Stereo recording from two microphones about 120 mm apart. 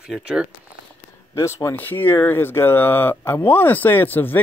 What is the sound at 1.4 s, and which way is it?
Speech, 25° left (ahead or behind).